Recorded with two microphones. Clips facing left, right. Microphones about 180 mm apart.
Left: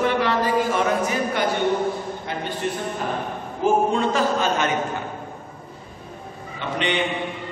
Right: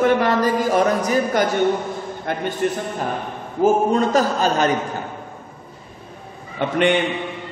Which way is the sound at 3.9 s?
40° right (ahead or behind).